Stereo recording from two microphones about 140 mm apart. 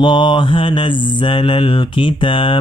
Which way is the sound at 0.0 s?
35° left (ahead or behind).